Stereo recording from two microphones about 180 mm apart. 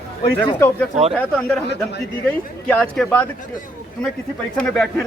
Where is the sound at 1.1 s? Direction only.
5° left (ahead or behind).